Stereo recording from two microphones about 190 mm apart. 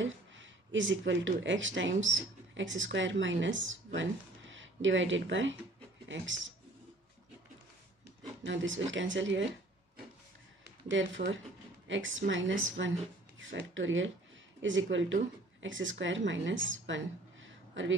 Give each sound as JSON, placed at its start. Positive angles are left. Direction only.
{"t": 0.0, "sound": "a woman's voice", "side_deg": -80}
{"t": 8.5, "sound": "speech", "side_deg": -80}
{"t": 10.9, "sound": "a woman's voice", "side_deg": -75}